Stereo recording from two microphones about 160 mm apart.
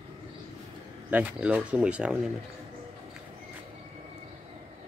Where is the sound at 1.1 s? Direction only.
10° right (ahead or behind).